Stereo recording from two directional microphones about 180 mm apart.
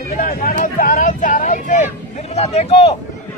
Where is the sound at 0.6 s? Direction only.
50° left (ahead or behind).